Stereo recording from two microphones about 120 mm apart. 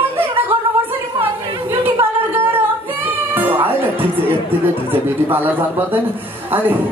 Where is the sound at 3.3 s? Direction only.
15° right (ahead or behind).